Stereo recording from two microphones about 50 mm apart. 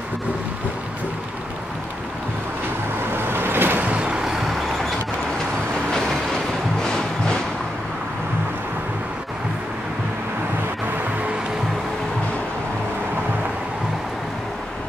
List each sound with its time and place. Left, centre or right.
3.3 s vehicle: right
3.9 s vehicle: right
5.9 s music: centre